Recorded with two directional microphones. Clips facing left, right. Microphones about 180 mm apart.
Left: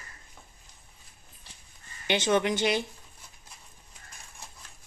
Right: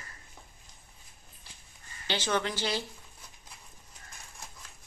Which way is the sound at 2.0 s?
20° left (ahead or behind).